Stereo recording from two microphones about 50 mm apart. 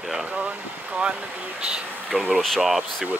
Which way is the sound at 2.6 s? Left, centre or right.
Centre.